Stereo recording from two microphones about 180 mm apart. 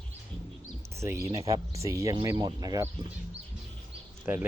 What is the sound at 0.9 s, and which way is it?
Speech, 15° right (ahead or behind).